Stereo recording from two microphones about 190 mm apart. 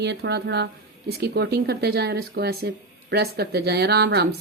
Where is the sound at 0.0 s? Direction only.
60° right (ahead or behind).